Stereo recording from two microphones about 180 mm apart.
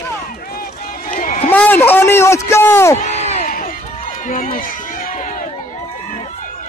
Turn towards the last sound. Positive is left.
turn(degrees=45)  # may be behind; listen again after turning